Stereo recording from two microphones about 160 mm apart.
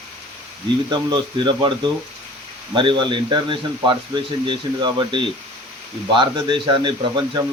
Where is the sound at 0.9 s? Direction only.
30° right (ahead or behind).